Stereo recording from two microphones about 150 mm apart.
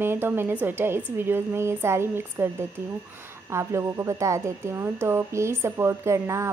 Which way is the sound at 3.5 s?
20° right (ahead or behind).